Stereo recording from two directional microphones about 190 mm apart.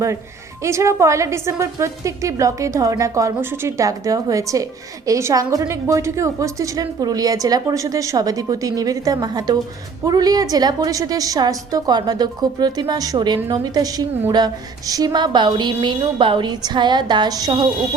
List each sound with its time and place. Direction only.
0.6 s a woman's voice: 15° right (ahead or behind)